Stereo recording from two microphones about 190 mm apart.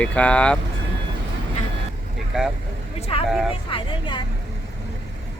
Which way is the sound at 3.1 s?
30° left (ahead or behind).